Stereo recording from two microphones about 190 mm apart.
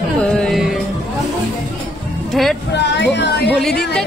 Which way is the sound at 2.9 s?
65° left (ahead or behind).